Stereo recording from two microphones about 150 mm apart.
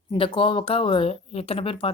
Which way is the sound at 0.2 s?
35° left (ahead or behind).